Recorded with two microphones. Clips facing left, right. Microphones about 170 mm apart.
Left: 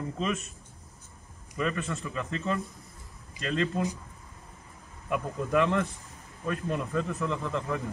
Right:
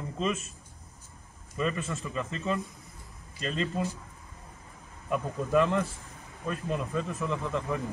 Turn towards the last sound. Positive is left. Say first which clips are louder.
# even
turn(degrees=0)  # may be behind; listen again after turning